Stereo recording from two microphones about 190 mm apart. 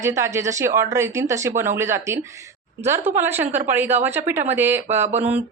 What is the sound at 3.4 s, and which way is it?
Speech, 40° right (ahead or behind).